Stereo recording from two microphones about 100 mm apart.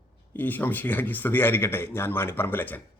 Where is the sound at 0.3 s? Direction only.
20° left (ahead or behind).